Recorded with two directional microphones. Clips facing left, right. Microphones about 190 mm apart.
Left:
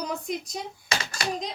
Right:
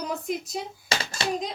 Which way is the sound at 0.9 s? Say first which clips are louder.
Right 1 dB; 25° right (ahead or behind).